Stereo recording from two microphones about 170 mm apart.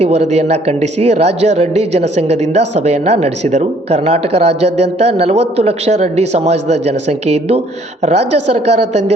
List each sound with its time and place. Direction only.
0.0 s speech: 40° right (ahead or behind)